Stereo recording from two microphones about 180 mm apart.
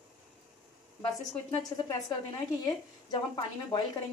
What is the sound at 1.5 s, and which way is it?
Speech, 20° left (ahead or behind).